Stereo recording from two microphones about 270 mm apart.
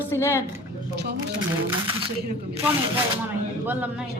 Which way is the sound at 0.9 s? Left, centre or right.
Right.